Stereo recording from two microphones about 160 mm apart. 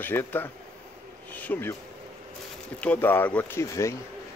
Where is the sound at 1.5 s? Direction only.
15° left (ahead or behind).